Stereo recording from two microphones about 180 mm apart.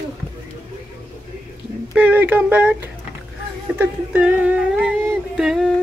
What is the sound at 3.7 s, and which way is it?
Music, 10° right (ahead or behind).